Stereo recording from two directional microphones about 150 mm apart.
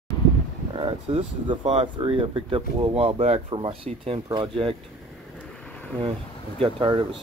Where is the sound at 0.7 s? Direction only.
40° right (ahead or behind).